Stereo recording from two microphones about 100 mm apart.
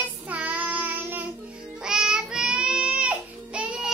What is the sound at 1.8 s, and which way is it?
Child singing, 5° right (ahead or behind).